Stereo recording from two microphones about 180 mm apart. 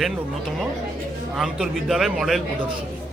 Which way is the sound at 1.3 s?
5° right (ahead or behind).